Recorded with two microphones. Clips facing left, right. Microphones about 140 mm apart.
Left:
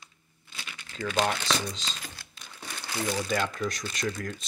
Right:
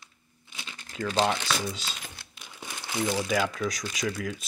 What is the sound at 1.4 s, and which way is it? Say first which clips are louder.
Speech: even; 5° right (ahead or behind).